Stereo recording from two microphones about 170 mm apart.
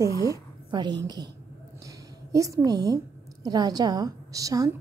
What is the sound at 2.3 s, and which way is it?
A woman's voice, 20° right (ahead or behind).